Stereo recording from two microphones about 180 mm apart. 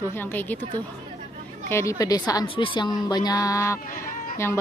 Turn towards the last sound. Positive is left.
turn(degrees=50)  # may be behind; listen again after turning